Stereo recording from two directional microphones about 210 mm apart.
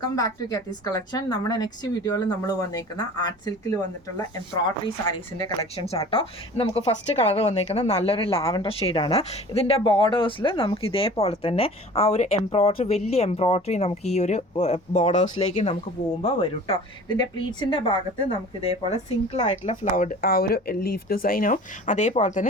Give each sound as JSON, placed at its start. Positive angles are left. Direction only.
{"t": 0.0, "sound": "a woman's voice", "side_deg": 15}